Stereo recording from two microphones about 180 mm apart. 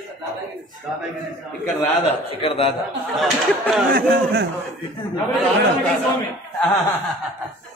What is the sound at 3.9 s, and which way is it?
Speech, 65° right (ahead or behind).